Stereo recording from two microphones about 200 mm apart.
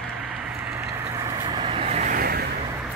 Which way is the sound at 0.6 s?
10° right (ahead or behind).